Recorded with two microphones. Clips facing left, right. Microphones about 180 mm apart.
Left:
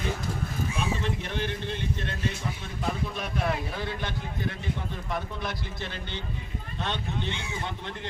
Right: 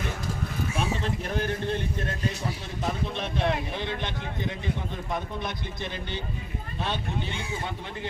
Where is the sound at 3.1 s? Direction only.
30° right (ahead or behind).